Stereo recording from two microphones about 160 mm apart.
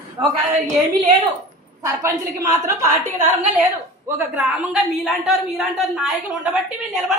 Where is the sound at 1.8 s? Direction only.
20° right (ahead or behind).